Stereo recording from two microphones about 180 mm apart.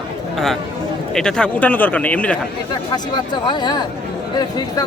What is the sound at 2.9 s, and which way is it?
Speech, 25° left (ahead or behind).